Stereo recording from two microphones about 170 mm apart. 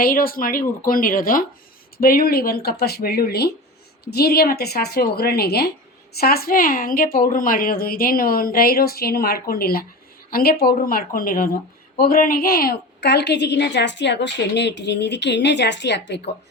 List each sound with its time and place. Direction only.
0.0 s a woman's voice: 60° left (ahead or behind); by 16.2 s 90° left